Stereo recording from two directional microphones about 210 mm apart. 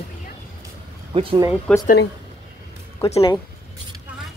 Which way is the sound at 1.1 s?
25° right (ahead or behind).